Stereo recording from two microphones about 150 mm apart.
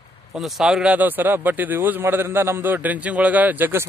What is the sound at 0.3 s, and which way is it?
Speech, centre (ahead or behind).